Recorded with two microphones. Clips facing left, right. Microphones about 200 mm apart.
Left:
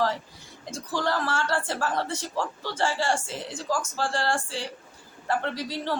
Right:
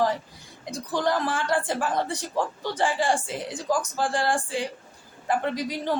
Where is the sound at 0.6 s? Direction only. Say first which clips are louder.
Right 3 dB; 15° right (ahead or behind).